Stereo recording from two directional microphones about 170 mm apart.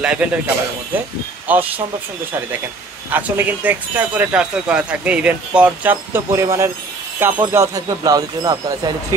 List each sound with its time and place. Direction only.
0.0 s speech: 5° right (ahead or behind)
1.5 s speech: 10° right (ahead or behind)
3.1 s speech: 10° right (ahead or behind)